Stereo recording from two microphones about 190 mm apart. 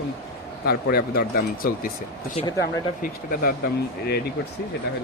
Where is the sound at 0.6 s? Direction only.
55° left (ahead or behind).